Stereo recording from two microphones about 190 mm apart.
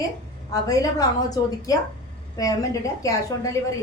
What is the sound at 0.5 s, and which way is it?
A woman's voice, 20° left (ahead or behind).